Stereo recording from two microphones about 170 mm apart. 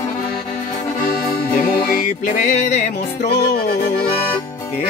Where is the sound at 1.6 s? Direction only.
55° left (ahead or behind).